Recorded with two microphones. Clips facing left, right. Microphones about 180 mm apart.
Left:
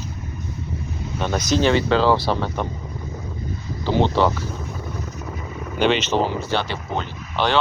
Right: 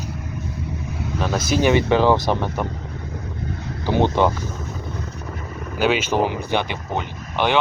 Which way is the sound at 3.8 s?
15° right (ahead or behind).